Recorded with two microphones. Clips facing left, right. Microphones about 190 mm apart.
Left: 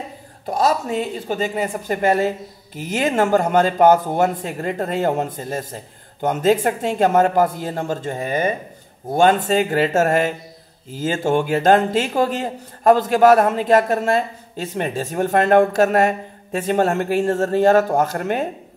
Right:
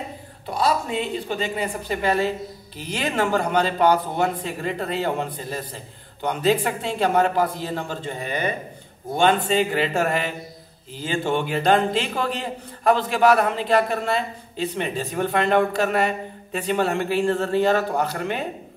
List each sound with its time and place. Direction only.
0.5 s speech: 45° left (ahead or behind)